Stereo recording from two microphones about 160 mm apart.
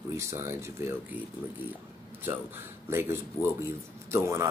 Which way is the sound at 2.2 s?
15° right (ahead or behind).